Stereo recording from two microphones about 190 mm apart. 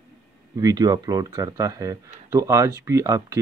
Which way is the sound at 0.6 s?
20° right (ahead or behind).